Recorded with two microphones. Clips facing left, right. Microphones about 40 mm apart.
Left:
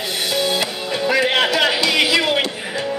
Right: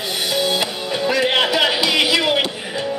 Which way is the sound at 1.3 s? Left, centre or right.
Centre.